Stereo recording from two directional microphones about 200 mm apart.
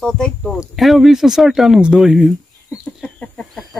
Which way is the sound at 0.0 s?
5° left (ahead or behind).